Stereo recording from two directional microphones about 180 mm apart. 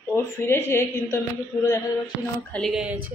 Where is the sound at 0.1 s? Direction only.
15° left (ahead or behind).